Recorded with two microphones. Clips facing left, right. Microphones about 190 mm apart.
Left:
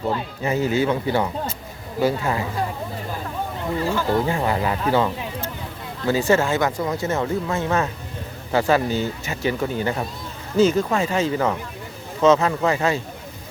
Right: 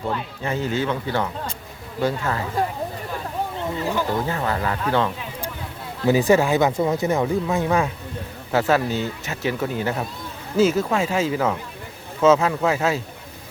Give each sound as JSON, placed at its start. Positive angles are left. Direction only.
{"t": 0.4, "sound": "speech", "side_deg": 10}
{"t": 3.8, "sound": "speech", "side_deg": -15}
{"t": 4.3, "sound": "speech", "side_deg": 15}
{"t": 6.1, "sound": "speech", "side_deg": -15}
{"t": 8.5, "sound": "speech", "side_deg": 0}